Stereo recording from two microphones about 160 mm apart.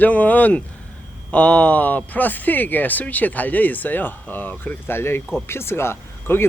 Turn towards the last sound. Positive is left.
turn(degrees=15)  # may be behind; listen again after turning